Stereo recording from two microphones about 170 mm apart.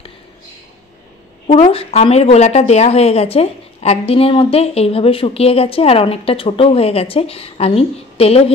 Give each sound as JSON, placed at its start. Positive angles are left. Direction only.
{"t": 1.5, "sound": "speech", "side_deg": 35}